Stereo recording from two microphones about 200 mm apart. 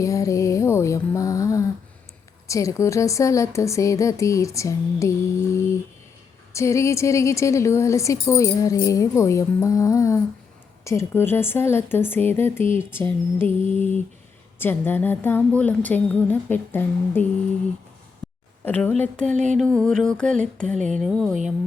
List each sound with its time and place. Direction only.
0.0 s a sound: 15° left (ahead or behind)
2.5 s a woman's voice: 15° left (ahead or behind)
18.6 s a woman's voice: 10° left (ahead or behind)
19.2 s music: 35° right (ahead or behind)
19.5 s mantra: 5° left (ahead or behind)